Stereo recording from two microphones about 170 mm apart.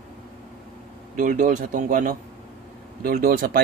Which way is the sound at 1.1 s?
50° right (ahead or behind).